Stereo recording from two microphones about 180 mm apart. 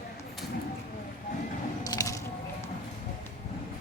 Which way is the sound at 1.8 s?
20° left (ahead or behind).